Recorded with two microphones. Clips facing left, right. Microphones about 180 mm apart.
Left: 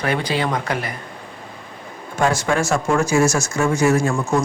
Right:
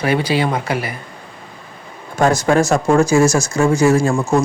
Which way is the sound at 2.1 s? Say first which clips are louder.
Right 5 dB; 40° right (ahead or behind).